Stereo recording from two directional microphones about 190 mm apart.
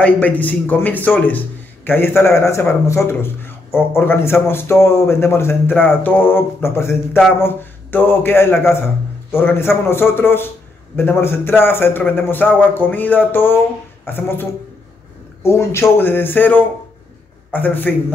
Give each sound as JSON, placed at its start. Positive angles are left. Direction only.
{"t": 0.0, "sound": "a man's voice", "side_deg": 10}